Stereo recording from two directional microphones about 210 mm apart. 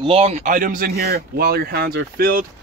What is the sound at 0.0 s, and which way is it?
Speech, 30° right (ahead or behind).